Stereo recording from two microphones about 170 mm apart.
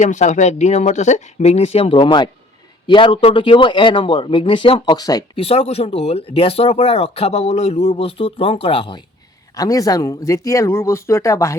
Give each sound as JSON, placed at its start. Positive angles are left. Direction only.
{"t": 0.0, "sound": "speech", "side_deg": 45}
{"t": 5.4, "sound": "speech", "side_deg": 35}